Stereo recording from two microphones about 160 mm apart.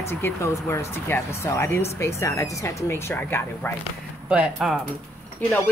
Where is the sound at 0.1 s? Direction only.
15° left (ahead or behind).